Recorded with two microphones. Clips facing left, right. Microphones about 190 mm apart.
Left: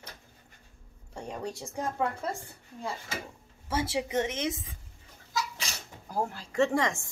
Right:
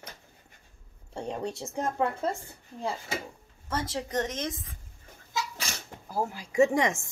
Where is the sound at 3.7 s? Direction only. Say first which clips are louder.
Left 2 dB; 10° left (ahead or behind).